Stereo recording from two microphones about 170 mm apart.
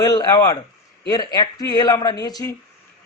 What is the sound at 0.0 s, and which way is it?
A man's voice, 20° left (ahead or behind).